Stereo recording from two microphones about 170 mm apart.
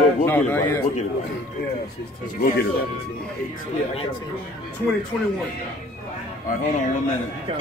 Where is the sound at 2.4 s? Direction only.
65° left (ahead or behind).